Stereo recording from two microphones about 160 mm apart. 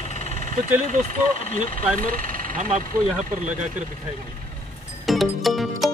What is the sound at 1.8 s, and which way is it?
Speech, 60° right (ahead or behind).